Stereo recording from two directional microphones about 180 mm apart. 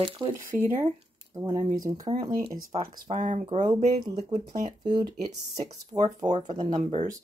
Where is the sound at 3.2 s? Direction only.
45° right (ahead or behind).